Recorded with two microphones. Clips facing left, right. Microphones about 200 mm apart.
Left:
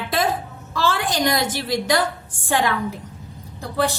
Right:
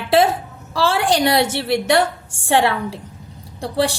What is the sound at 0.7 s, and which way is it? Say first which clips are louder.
Speech: right 5 dB; 90° right.